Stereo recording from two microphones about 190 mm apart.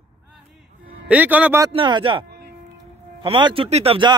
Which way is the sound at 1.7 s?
25° right (ahead or behind).